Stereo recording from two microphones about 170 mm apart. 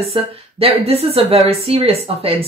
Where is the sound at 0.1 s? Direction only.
35° right (ahead or behind).